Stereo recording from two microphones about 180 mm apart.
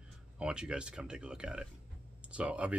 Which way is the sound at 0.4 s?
5° right (ahead or behind).